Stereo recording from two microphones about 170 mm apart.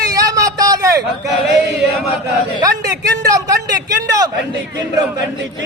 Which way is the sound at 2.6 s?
20° right (ahead or behind).